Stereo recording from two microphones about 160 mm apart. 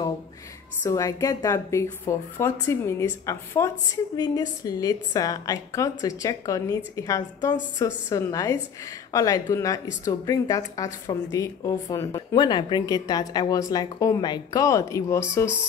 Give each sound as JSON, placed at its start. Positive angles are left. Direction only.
{"t": 0.8, "sound": "a woman's voice", "side_deg": 20}